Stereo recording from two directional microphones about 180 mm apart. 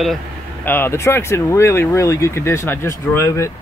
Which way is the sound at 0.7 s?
10° left (ahead or behind).